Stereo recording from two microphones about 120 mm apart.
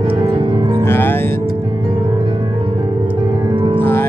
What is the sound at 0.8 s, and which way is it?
Music, 20° left (ahead or behind).